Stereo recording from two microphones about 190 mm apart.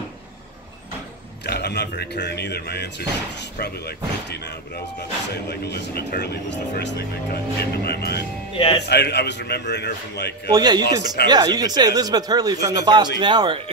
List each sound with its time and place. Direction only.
1.4 s a man's voice: 60° left (ahead or behind)
5.5 s a man's voice: 60° left (ahead or behind)
8.5 s speech: 30° left (ahead or behind)
8.8 s a man's voice: 60° left (ahead or behind)
10.5 s speech: 20° right (ahead or behind)